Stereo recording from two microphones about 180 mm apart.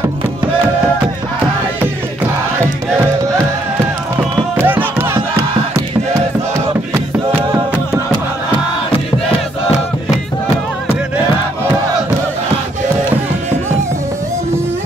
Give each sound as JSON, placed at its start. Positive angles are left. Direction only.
{"t": 4.6, "sound": "music", "side_deg": -10}
{"t": 6.1, "sound": "battle cry", "side_deg": -15}